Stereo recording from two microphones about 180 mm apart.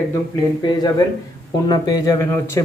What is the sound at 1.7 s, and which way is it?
Speech, 20° left (ahead or behind).